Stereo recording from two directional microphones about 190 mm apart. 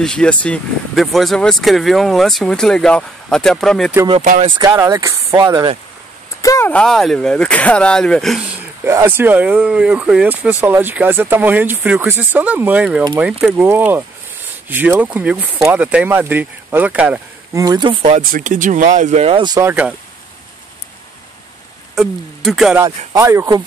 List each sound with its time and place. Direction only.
0.0 s speech: 5° left (ahead or behind)
4.2 s speech: 45° right (ahead or behind)
4.6 s speech: 15° right (ahead or behind)
6.4 s speech: 15° left (ahead or behind)
8.8 s speech: 10° right (ahead or behind)
17.6 s speech: 20° right (ahead or behind)
18.2 s speech: 45° right (ahead or behind); by 19.7 s 20° right (ahead or behind)
19.7 s speech: 5° right (ahead or behind)
21.9 s speech: centre (ahead or behind)
22.8 s speech: 15° right (ahead or behind)